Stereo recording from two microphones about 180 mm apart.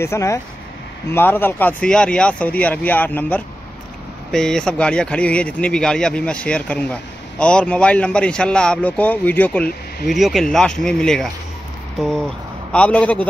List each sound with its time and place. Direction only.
0.0 s speech: 15° left (ahead or behind)